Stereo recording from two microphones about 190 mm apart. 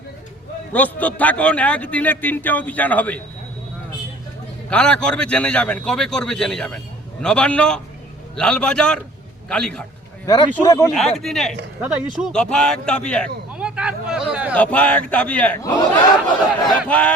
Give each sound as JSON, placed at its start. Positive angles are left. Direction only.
{"t": 0.7, "sound": "a man's voice", "side_deg": 10}
{"t": 4.7, "sound": "a man's voice", "side_deg": 5}
{"t": 10.2, "sound": "a man's voice", "side_deg": 20}
{"t": 10.9, "sound": "a man's voice", "side_deg": 0}
{"t": 13.5, "sound": "a sound", "side_deg": -5}
{"t": 14.5, "sound": "a man's voice", "side_deg": 5}
{"t": 16.6, "sound": "a man's voice", "side_deg": 5}